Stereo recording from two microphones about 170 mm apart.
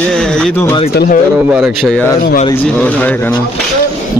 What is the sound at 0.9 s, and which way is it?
Speech, 65° left (ahead or behind).